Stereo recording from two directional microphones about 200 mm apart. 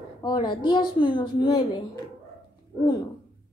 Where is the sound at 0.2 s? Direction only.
20° left (ahead or behind).